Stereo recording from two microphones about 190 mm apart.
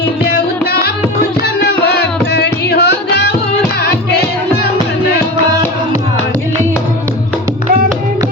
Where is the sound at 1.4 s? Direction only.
60° left (ahead or behind).